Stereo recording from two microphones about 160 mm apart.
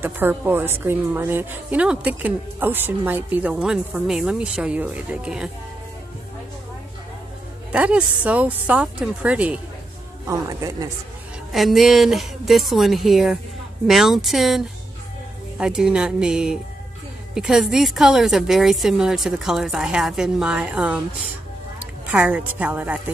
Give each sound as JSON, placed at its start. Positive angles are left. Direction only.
{"t": 0.0, "sound": "a woman's voice", "side_deg": -10}
{"t": 7.7, "sound": "a woman's voice", "side_deg": -10}
{"t": 10.2, "sound": "speech", "side_deg": -20}
{"t": 11.5, "sound": "a woman's voice", "side_deg": 0}